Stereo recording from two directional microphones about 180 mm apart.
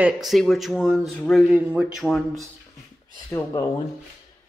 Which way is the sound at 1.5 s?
10° right (ahead or behind).